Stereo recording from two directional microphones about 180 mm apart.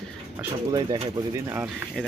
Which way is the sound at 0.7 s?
20° right (ahead or behind).